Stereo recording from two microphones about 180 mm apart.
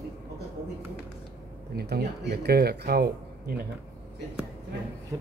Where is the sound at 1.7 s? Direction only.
65° right (ahead or behind).